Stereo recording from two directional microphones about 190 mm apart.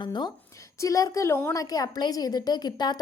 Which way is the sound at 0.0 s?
25° left (ahead or behind).